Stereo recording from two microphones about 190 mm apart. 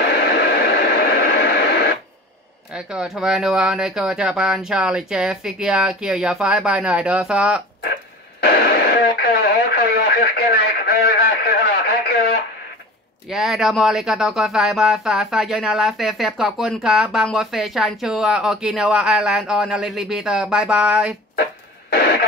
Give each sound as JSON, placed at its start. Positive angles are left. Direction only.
{"t": 0.1, "sound": "radio", "side_deg": 60}
{"t": 2.7, "sound": "speech", "side_deg": -5}
{"t": 8.4, "sound": "radio", "side_deg": 55}
{"t": 13.3, "sound": "speech", "side_deg": 0}